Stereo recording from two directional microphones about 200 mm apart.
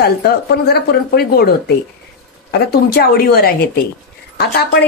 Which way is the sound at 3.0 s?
50° left (ahead or behind).